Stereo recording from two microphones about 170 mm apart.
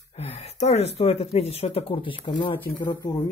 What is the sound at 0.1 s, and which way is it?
Speech, 35° left (ahead or behind).